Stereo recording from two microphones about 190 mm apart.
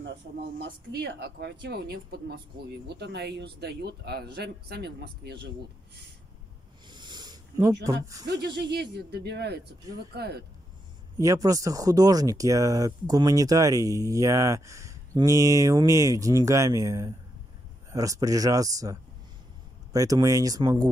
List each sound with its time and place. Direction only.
0.0 s speech: 75° right (ahead or behind)
6.9 s a sound: 25° right (ahead or behind)
7.8 s speech: 20° right (ahead or behind)
8.9 s speech: 60° right (ahead or behind)
11.1 s speech: 15° right (ahead or behind)